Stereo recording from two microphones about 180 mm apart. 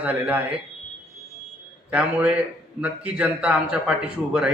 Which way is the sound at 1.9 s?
10° right (ahead or behind).